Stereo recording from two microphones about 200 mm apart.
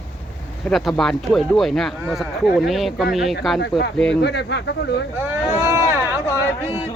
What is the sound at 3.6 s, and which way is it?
Speech, 55° left (ahead or behind).